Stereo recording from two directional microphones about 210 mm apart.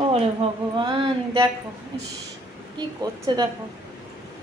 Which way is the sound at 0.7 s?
20° right (ahead or behind).